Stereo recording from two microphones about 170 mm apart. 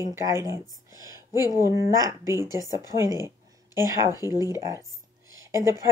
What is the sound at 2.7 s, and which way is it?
Speech, 20° left (ahead or behind).